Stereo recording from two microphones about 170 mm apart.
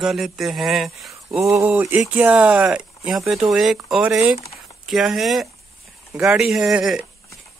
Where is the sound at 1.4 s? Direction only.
15° right (ahead or behind).